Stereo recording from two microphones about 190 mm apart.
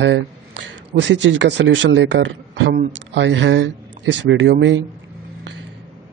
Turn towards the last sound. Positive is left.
turn(degrees=-70)  # may be behind; listen again after turning